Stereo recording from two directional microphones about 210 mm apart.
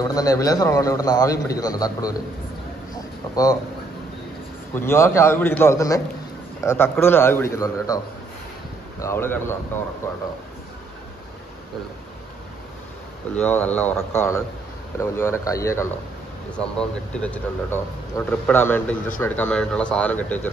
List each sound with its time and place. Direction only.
0.0 s speech: 15° left (ahead or behind)
4.7 s speech: 10° left (ahead or behind)
9.0 s speech: 10° left (ahead or behind)
13.3 s speech: 5° left (ahead or behind)